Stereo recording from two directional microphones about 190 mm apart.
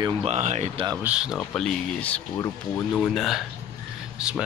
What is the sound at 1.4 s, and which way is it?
Speech, 5° left (ahead or behind).